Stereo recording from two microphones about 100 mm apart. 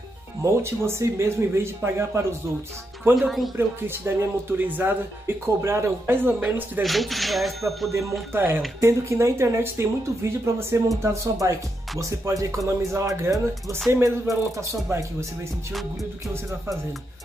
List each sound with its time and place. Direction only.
0.4 s speech: 25° right (ahead or behind)
3.2 s speech: centre (ahead or behind)
3.5 s speech: 25° right (ahead or behind)
6.8 s speech: centre (ahead or behind)
8.3 s speech: 20° right (ahead or behind)